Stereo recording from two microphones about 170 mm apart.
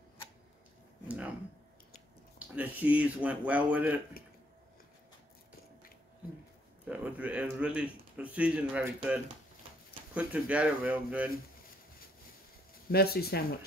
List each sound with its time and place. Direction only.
1.0 s a sound: 10° right (ahead or behind)
2.3 s speech: 10° right (ahead or behind)
6.9 s a man's voice: 10° right (ahead or behind)
12.9 s speech: 65° left (ahead or behind)